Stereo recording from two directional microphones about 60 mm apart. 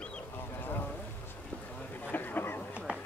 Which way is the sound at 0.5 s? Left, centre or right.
Left.